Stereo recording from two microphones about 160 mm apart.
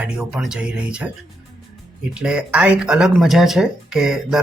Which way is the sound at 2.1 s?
5° right (ahead or behind).